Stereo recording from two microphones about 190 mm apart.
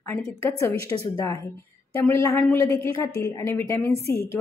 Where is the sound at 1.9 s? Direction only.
15° left (ahead or behind).